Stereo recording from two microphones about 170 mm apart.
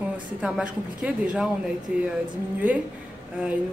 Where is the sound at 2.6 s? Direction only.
10° right (ahead or behind).